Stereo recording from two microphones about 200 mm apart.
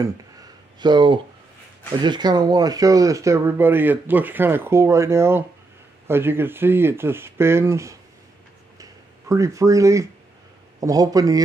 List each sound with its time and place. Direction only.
0.0 s a sound: 20° right (ahead or behind)
2.0 s speech: 20° right (ahead or behind)
9.3 s speech: 15° right (ahead or behind)